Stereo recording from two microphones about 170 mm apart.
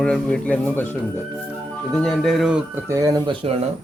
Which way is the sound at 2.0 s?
Centre (ahead or behind).